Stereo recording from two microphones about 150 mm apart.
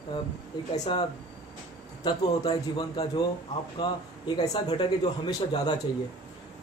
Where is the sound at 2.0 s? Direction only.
30° left (ahead or behind).